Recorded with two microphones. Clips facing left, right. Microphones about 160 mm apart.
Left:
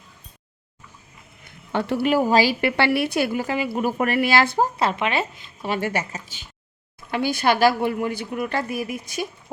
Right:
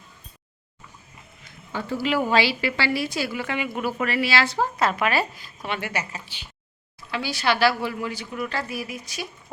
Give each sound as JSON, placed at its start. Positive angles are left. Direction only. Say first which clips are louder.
{"t": 1.5, "sound": "a sound", "louder": "left 6 dB", "side_deg": 70}
{"t": 2.0, "sound": "a woman's voice", "louder": "left 3 dB", "side_deg": 40}
{"t": 2.6, "sound": "a woman's voice", "louder": "left 5 dB", "side_deg": 55}
{"t": 3.4, "sound": "speech", "louder": "left 4 dB", "side_deg": 35}
{"t": 4.8, "sound": "speech", "louder": "even", "side_deg": 25}
{"t": 5.6, "sound": "speech", "louder": "left 5 dB", "side_deg": 40}